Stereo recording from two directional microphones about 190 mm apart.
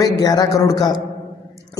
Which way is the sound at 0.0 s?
20° left (ahead or behind).